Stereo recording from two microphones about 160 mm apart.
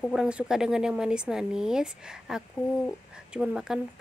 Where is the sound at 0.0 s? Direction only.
5° right (ahead or behind).